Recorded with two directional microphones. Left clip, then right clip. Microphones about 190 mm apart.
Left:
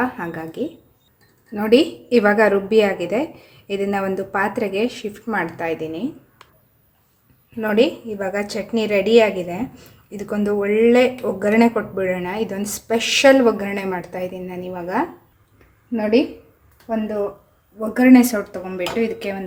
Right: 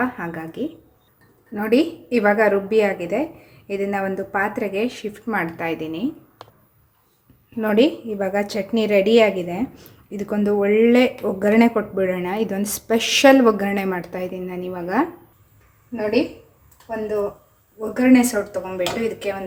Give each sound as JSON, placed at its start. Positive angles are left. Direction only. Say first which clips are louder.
{"t": 0.0, "sound": "a woman's voice", "louder": "left 1 dB", "side_deg": 5}
{"t": 7.6, "sound": "speech", "louder": "even", "side_deg": -10}
{"t": 17.7, "sound": "speech", "louder": "left 3 dB", "side_deg": 45}
{"t": 18.8, "sound": "speech", "louder": "left 2 dB", "side_deg": 25}